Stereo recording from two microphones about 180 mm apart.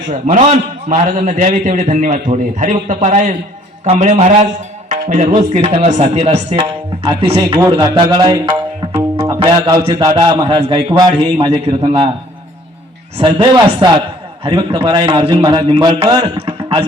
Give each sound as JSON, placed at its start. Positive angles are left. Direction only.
{"t": 0.1, "sound": "a man's voice", "side_deg": -40}
{"t": 5.4, "sound": "speech", "side_deg": -30}
{"t": 6.5, "sound": "a man's voice", "side_deg": -25}
{"t": 9.0, "sound": "music", "side_deg": -20}
{"t": 9.9, "sound": "a man's voice", "side_deg": -20}
{"t": 13.1, "sound": "a man's voice", "side_deg": -25}